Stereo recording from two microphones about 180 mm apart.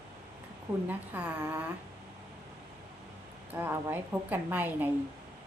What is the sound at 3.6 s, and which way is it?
A woman's voice, 10° right (ahead or behind).